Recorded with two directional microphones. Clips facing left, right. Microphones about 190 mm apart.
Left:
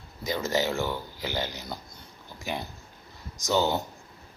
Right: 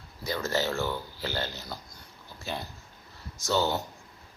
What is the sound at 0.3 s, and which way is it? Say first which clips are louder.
Speech: left 2 dB; 20° left (ahead or behind).